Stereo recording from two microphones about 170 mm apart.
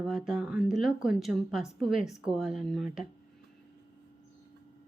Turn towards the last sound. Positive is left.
turn(degrees=0)  # may be behind; listen again after turning